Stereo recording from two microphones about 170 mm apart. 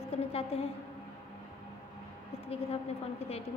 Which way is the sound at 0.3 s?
35° left (ahead or behind).